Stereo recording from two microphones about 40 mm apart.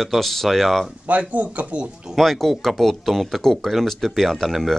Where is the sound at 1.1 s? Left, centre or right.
Right.